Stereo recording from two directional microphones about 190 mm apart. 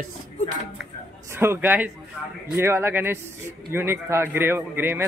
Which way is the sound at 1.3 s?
15° right (ahead or behind).